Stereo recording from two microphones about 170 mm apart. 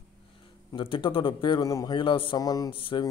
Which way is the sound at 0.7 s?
30° left (ahead or behind).